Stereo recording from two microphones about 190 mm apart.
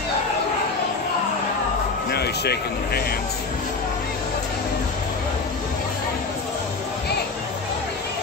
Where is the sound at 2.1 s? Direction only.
60° left (ahead or behind).